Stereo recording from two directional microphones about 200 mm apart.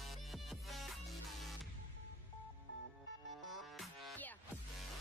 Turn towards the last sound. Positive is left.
turn(degrees=0)  # may be behind; listen again after turning